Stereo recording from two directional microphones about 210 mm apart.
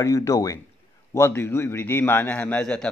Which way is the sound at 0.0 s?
15° left (ahead or behind).